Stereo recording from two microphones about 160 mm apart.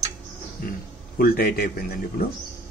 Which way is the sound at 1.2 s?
70° left (ahead or behind).